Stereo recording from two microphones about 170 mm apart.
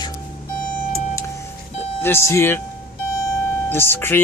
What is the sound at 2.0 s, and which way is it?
Speech, 15° left (ahead or behind).